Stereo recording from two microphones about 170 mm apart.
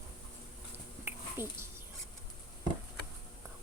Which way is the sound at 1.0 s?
15° right (ahead or behind).